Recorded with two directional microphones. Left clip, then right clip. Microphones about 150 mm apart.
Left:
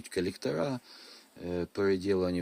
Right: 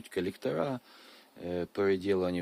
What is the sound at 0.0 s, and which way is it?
Speech, 20° right (ahead or behind).